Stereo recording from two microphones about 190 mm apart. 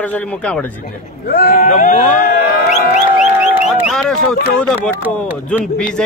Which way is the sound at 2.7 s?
40° left (ahead or behind).